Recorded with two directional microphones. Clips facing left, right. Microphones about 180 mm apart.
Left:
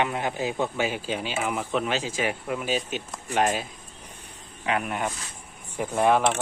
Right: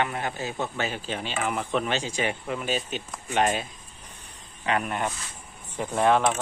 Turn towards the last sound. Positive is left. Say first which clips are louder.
# even
turn(degrees=10)  # may be behind; listen again after turning